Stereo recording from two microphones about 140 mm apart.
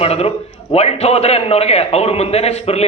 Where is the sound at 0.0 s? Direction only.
45° left (ahead or behind).